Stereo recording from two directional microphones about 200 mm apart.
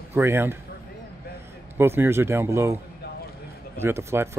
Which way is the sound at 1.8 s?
10° right (ahead or behind).